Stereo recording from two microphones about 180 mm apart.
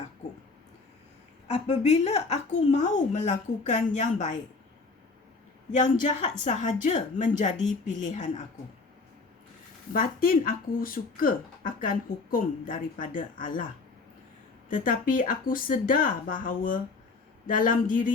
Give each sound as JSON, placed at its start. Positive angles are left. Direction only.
{"t": 1.5, "sound": "speech", "side_deg": 40}
{"t": 6.0, "sound": "speech", "side_deg": 40}
{"t": 9.9, "sound": "speech", "side_deg": 55}
{"t": 14.8, "sound": "speech", "side_deg": 50}